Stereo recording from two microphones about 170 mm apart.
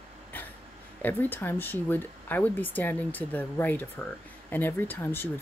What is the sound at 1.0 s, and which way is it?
Speech, 10° left (ahead or behind).